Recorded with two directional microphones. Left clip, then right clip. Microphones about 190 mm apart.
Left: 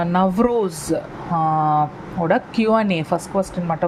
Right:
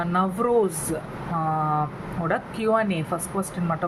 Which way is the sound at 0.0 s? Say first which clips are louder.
Left 5 dB; 35° left (ahead or behind).